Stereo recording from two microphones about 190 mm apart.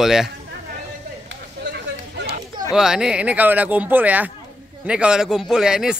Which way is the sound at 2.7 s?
5° right (ahead or behind).